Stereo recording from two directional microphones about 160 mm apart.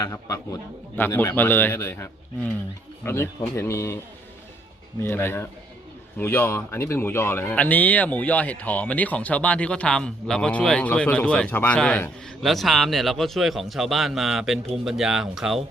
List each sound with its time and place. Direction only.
0.0 s speech: 20° left (ahead or behind)
5.0 s speech: 15° left (ahead or behind); by 15.6 s centre (ahead or behind)